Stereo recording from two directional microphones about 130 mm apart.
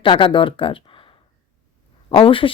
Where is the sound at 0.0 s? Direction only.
40° left (ahead or behind).